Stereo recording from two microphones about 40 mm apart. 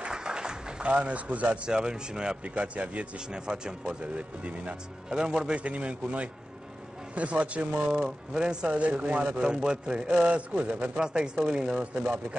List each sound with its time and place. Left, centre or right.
0.1 s a sound: centre
0.8 s a man's voice: right
1.7 s speech: centre
2.4 s a man's voice: right
3.3 s speech: centre
4.4 s a man's voice: right
5.1 s speech: centre
5.6 s a man's voice: right
7.9 s speech: centre
9.3 s speech: right
11.0 s speech: centre